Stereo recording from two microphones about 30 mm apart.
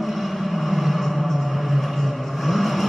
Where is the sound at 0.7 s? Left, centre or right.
Centre.